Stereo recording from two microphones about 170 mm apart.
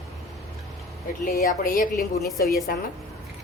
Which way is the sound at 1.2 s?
55° left (ahead or behind).